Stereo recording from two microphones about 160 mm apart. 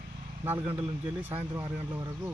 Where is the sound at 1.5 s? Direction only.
25° right (ahead or behind).